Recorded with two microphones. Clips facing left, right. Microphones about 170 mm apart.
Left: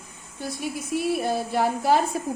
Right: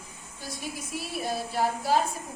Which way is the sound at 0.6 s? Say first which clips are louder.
Left 11 dB; 60° left (ahead or behind).